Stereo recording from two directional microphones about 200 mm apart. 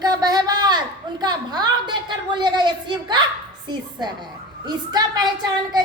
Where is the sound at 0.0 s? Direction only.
20° right (ahead or behind).